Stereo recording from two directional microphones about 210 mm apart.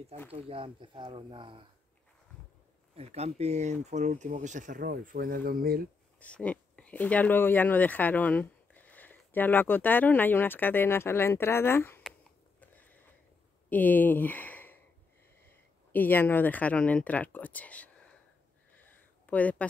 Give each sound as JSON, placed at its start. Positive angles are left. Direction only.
{"t": 0.3, "sound": "speech", "side_deg": -25}
{"t": 3.0, "sound": "speech", "side_deg": -30}
{"t": 6.1, "sound": "speech", "side_deg": 5}
{"t": 13.7, "sound": "speech", "side_deg": 10}
{"t": 18.9, "sound": "a sound", "side_deg": 5}